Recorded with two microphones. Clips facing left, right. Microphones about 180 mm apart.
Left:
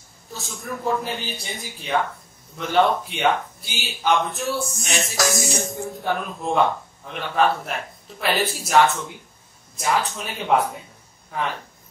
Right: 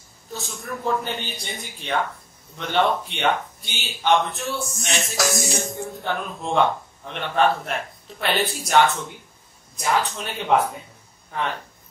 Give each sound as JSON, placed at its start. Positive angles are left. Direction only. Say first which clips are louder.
{"t": 0.3, "sound": "speech", "louder": "even", "side_deg": 0}